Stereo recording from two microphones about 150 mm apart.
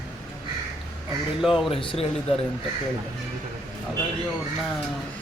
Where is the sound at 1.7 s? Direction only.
35° left (ahead or behind).